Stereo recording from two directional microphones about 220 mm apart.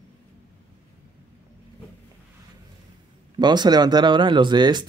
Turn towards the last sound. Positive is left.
turn(degrees=-20)  # may be behind; listen again after turning